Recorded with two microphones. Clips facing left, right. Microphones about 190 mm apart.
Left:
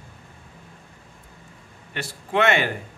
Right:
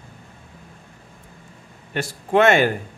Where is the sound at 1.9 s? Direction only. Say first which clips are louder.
Right 7 dB; 45° right (ahead or behind).